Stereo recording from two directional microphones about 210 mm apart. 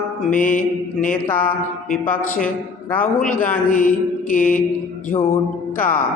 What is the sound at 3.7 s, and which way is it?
Mantra, 40° left (ahead or behind).